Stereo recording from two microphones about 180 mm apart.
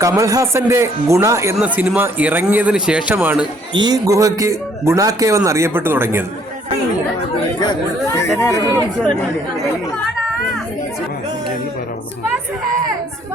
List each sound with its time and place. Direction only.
0.0 s a man's voice: 20° right (ahead or behind)
3.8 s a man's voice: 20° right (ahead or behind)
8.2 s speech: 15° left (ahead or behind)